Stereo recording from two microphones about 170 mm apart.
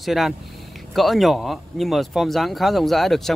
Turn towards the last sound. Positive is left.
turn(degrees=0)  # may be behind; listen again after turning